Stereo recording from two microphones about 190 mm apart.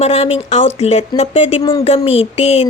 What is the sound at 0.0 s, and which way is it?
A woman's voice, 35° left (ahead or behind).